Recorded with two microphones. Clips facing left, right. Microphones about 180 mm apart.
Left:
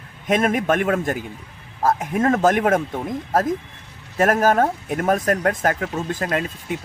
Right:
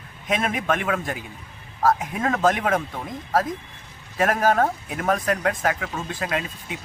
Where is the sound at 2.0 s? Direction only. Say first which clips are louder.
Left 4 dB; 45° left (ahead or behind).